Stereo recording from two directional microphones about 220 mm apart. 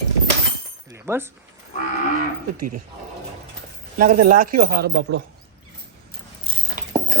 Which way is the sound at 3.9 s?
40° right (ahead or behind).